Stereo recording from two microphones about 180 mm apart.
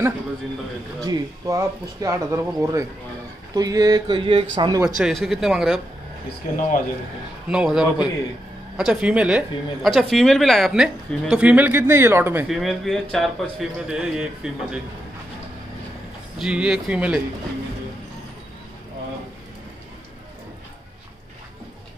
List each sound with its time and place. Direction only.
1.0 s speech: 20° right (ahead or behind)
4.8 s speech: 5° right (ahead or behind)
7.4 s speech: 5° right (ahead or behind)
12.4 s speech: centre (ahead or behind)
16.3 s speech: 5° right (ahead or behind)